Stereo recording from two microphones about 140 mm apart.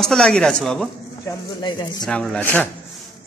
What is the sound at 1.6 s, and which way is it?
Speech, 30° left (ahead or behind).